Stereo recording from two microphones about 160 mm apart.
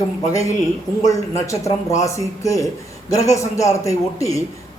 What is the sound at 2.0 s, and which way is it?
Speech, 20° left (ahead or behind).